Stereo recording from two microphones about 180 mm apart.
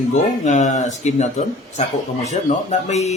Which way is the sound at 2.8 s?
40° left (ahead or behind).